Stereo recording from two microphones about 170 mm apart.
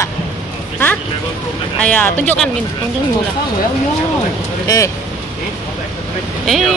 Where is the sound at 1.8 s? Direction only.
10° left (ahead or behind).